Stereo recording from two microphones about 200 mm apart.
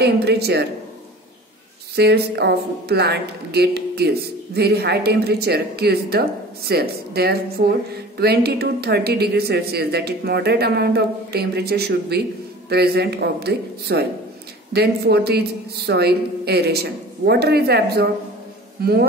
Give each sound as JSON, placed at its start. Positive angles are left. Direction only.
{"t": 0.0, "sound": "a woman's voice", "side_deg": -55}
{"t": 2.0, "sound": "a woman's voice", "side_deg": -55}